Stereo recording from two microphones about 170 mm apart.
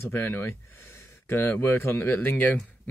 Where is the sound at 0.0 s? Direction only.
15° left (ahead or behind).